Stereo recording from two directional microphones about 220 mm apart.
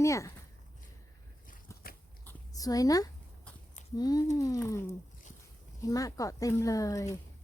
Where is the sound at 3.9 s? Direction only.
15° left (ahead or behind).